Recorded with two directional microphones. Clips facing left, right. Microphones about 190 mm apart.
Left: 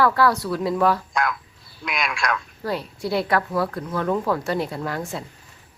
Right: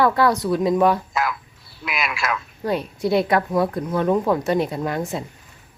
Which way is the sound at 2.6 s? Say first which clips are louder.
Right 7 dB; 20° right (ahead or behind).